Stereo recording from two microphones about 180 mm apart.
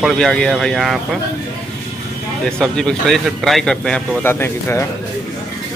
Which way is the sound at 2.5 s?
5° left (ahead or behind).